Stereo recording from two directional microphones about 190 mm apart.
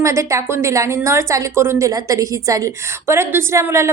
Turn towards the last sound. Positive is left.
turn(degrees=-15)  # may be behind; listen again after turning